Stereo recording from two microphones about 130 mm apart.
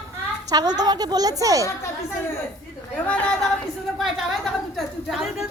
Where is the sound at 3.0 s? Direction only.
10° left (ahead or behind).